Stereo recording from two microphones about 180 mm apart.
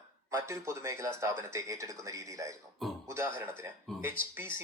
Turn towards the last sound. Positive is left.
turn(degrees=-10)  # may be behind; listen again after turning